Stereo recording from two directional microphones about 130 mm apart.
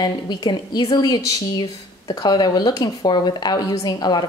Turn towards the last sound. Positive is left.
turn(degrees=30)  # may be behind; listen again after turning